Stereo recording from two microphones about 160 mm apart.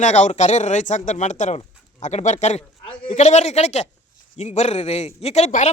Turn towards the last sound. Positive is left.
turn(degrees=45)  # may be behind; listen again after turning